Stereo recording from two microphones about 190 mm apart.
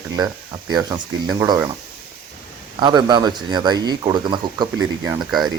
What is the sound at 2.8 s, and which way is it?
Speech, 20° right (ahead or behind).